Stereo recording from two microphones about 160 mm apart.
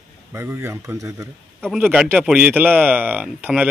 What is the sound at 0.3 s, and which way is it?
A man's voice, 15° right (ahead or behind).